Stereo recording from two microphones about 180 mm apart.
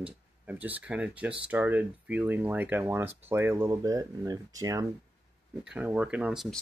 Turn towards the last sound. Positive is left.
turn(degrees=-5)  # may be behind; listen again after turning